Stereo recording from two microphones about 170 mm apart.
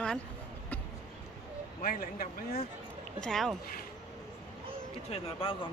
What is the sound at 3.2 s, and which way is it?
Speech, centre (ahead or behind).